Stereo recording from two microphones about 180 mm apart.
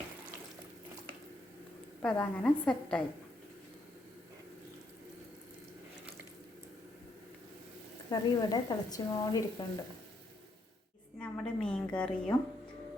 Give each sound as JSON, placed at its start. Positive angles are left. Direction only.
{"t": 2.0, "sound": "a woman's voice", "side_deg": 5}
{"t": 8.1, "sound": "speech", "side_deg": 20}
{"t": 11.2, "sound": "a woman's voice", "side_deg": 5}